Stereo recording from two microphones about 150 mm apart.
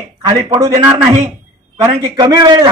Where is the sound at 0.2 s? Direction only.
25° right (ahead or behind).